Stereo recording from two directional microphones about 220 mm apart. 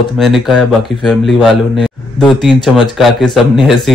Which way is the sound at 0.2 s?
Centre (ahead or behind).